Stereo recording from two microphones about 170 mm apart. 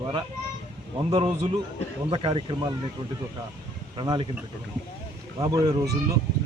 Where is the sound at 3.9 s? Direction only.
30° right (ahead or behind).